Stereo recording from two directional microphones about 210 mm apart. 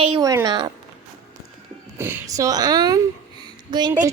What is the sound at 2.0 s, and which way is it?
A woman's voice, 15° right (ahead or behind).